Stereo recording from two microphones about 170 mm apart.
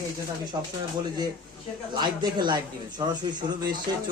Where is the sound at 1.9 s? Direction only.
25° right (ahead or behind).